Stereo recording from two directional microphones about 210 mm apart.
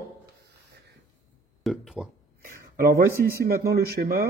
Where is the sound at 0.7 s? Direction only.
55° right (ahead or behind).